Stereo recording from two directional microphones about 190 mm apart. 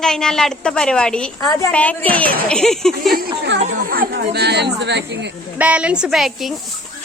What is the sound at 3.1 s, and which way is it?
Speech, 55° right (ahead or behind).